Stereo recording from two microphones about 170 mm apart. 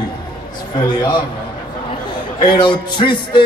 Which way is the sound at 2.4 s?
25° left (ahead or behind).